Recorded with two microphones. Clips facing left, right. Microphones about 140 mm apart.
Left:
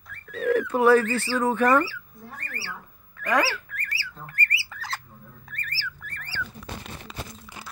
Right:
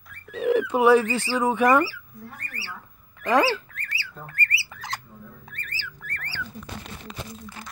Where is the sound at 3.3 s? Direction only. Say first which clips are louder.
Right 4 dB; 25° right (ahead or behind).